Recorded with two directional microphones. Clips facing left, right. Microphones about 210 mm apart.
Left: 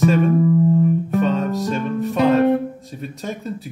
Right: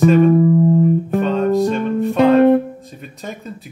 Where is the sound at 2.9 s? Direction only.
Centre (ahead or behind).